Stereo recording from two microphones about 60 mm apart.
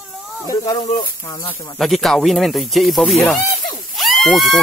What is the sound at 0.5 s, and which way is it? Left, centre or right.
Speech, left.